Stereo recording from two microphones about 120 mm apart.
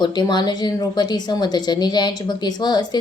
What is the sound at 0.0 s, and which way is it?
A woman's voice, 40° left (ahead or behind).